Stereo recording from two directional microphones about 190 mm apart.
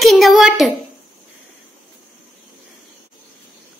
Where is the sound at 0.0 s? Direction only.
Centre (ahead or behind).